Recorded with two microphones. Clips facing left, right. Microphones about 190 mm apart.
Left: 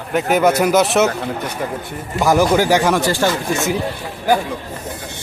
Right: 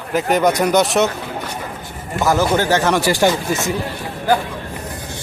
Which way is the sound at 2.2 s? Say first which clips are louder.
Left 2 dB; 15° left (ahead or behind).